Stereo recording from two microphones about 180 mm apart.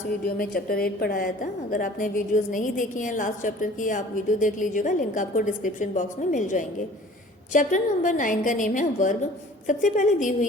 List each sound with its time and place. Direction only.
0.3 s a woman's voice: 55° left (ahead or behind)